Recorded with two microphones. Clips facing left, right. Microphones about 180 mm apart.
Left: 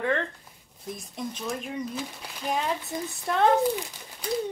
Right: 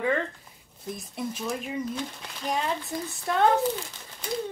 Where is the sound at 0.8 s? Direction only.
5° right (ahead or behind).